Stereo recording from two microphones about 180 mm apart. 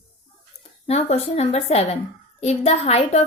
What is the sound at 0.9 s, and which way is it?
A woman's voice, 35° left (ahead or behind).